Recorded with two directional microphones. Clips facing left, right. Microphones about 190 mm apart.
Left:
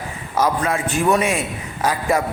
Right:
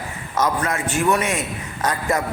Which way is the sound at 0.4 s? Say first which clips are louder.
Left 2 dB; 10° left (ahead or behind).